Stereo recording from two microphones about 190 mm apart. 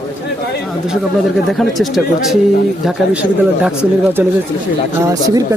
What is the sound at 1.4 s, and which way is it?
Speech, centre (ahead or behind).